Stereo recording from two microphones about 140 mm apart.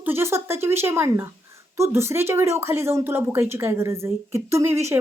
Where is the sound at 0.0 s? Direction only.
15° right (ahead or behind).